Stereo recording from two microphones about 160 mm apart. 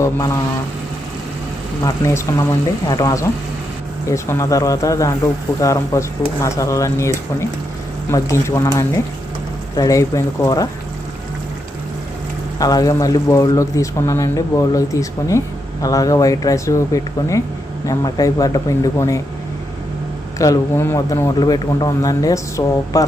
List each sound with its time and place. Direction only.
0.0 s speech: 20° left (ahead or behind)
1.8 s speech: 20° left (ahead or behind)
8.1 s speech: 20° left (ahead or behind)
12.5 s speech: 20° left (ahead or behind)
20.4 s speech: 20° left (ahead or behind)